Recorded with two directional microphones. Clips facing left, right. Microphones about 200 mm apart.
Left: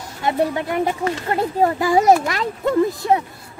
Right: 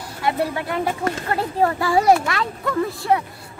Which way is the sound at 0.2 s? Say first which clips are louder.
Left 3 dB; 20° left (ahead or behind).